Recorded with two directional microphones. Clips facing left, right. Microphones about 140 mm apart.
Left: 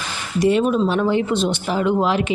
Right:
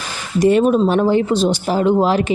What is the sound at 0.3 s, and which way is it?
Speech, 45° right (ahead or behind).